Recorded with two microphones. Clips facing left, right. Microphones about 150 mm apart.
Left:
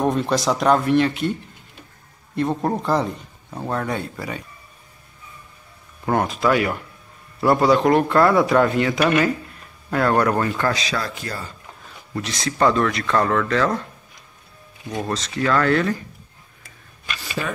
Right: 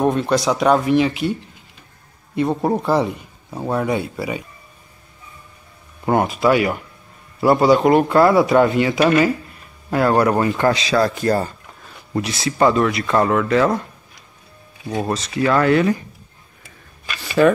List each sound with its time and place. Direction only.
0.0 s speech: centre (ahead or behind)
2.3 s speech: 5° right (ahead or behind)
6.1 s speech: 5° right (ahead or behind)
10.7 s speech: 25° right (ahead or behind)
11.0 s a man's voice: 40° right (ahead or behind)
12.2 s speech: 5° right (ahead or behind)
14.9 s speech: 10° right (ahead or behind)
17.4 s speech: 90° right